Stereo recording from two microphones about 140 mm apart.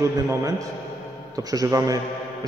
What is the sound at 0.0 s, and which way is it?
A man's voice, 25° right (ahead or behind).